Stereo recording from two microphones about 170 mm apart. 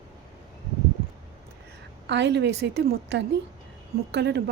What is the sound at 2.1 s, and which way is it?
A woman's voice, 90° right.